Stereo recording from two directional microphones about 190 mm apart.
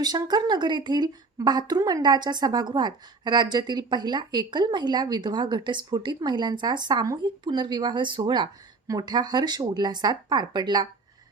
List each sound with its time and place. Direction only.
0.0 s speech: 20° right (ahead or behind)